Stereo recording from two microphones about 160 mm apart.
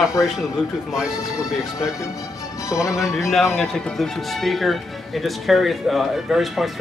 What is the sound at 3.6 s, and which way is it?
Speech, centre (ahead or behind).